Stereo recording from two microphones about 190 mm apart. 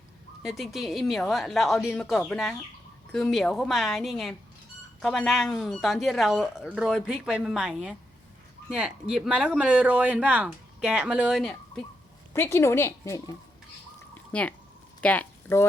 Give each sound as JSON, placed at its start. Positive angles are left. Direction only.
{"t": 0.4, "sound": "speech", "side_deg": 0}
{"t": 12.3, "sound": "speech", "side_deg": 15}
{"t": 14.3, "sound": "speech", "side_deg": 5}